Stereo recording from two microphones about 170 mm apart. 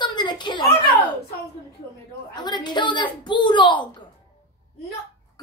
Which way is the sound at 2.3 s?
25° left (ahead or behind).